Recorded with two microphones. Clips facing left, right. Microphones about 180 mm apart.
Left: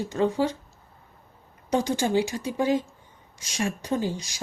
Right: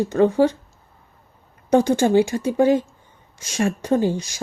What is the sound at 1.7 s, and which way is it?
Speech, 50° right (ahead or behind).